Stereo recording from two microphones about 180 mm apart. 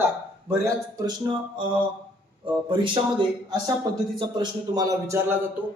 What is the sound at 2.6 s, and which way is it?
A man's voice, 25° right (ahead or behind).